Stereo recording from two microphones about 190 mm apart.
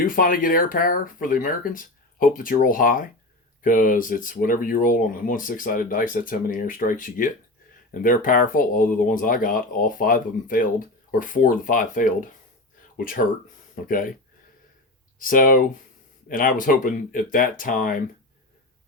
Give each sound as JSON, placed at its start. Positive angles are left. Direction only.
{"t": 0.0, "sound": "speech", "side_deg": 45}
{"t": 13.8, "sound": "speech", "side_deg": 45}
{"t": 15.2, "sound": "speech", "side_deg": 45}